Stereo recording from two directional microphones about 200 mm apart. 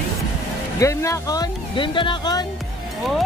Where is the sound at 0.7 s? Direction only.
15° left (ahead or behind).